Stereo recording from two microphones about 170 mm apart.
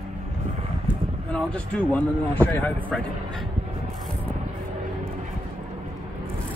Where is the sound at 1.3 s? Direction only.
5° left (ahead or behind).